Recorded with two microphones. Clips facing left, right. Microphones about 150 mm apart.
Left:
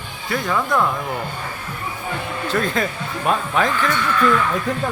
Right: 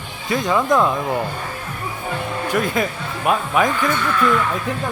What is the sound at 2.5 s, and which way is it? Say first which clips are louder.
Speech: right 1 dB; 10° right (ahead or behind).